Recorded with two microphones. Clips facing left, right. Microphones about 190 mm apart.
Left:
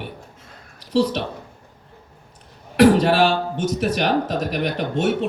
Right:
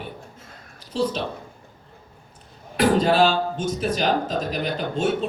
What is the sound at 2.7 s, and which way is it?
A man's voice, 70° left (ahead or behind).